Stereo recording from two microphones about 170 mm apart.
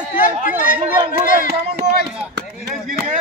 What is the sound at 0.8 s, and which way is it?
Chatter, 35° right (ahead or behind).